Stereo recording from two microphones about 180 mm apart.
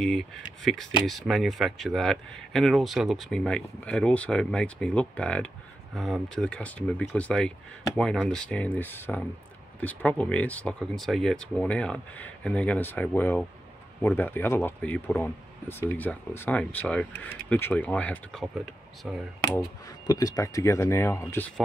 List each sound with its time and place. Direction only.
0.0 s speech: centre (ahead or behind)
20.1 s speech: 20° left (ahead or behind)